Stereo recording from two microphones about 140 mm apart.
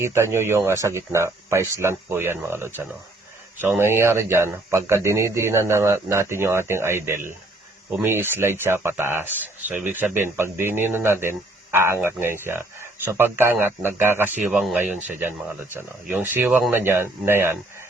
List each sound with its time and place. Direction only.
0.0 s speech: 20° right (ahead or behind)